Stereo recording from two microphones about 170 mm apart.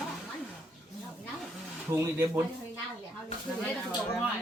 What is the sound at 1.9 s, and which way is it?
Speech, 15° right (ahead or behind).